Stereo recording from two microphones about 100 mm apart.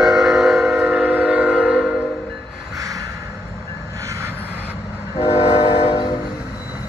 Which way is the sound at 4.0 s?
30° right (ahead or behind).